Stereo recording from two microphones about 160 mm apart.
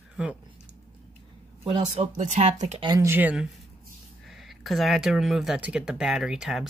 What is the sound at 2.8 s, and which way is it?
Speech, 20° right (ahead or behind).